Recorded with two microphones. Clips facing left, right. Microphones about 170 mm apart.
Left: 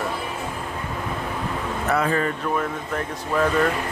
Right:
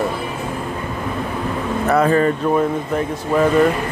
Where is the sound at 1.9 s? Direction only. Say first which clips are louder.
Right 7 dB; 45° right (ahead or behind).